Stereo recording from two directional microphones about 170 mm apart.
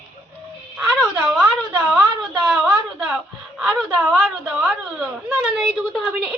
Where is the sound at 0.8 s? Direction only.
5° right (ahead or behind).